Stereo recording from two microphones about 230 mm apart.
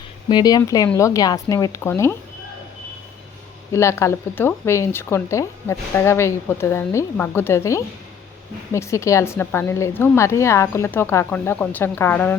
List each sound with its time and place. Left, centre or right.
0.3 s speech: centre
3.7 s speech: centre